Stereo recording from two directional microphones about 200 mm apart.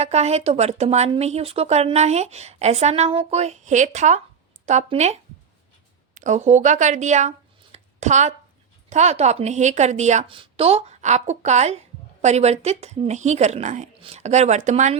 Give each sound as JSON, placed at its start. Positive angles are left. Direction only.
{"t": 0.0, "sound": "speech", "side_deg": -35}
{"t": 6.1, "sound": "speech", "side_deg": -35}